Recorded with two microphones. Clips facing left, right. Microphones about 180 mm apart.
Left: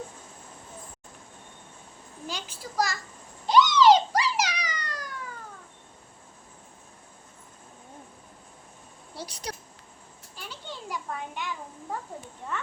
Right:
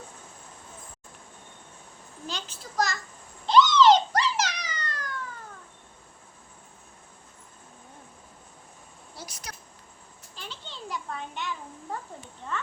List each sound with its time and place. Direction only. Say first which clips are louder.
2.2 s a child's voice: left 1 dB; 10° left (ahead or behind)
3.4 s cat: even; 10° left (ahead or behind)
9.1 s speech: left 6 dB; 30° left (ahead or behind)
10.3 s children playing: left 2 dB; 10° left (ahead or behind)